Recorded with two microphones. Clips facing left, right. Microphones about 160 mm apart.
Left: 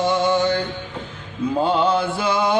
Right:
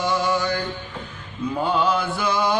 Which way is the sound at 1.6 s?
25° left (ahead or behind).